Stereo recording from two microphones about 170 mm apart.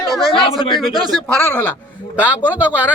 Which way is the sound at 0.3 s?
30° left (ahead or behind).